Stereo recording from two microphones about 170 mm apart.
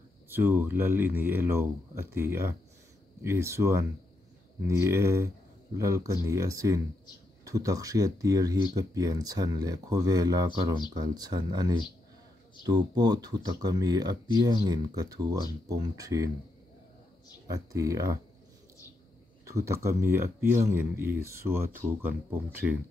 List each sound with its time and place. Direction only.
0.3 s speech: 10° right (ahead or behind)
17.5 s speech: 20° right (ahead or behind)
19.4 s speech: 15° right (ahead or behind)